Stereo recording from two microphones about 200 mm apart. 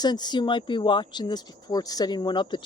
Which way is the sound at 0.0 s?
20° left (ahead or behind).